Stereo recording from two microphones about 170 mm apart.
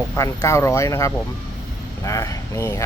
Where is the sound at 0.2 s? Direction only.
15° left (ahead or behind).